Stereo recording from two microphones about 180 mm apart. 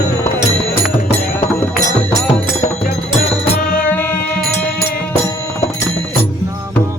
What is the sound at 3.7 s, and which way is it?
Music, 10° left (ahead or behind).